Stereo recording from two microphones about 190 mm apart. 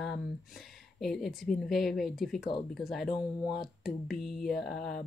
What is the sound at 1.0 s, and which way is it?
Speech, centre (ahead or behind).